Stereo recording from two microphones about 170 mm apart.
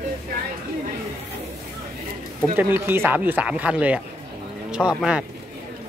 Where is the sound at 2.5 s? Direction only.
10° right (ahead or behind).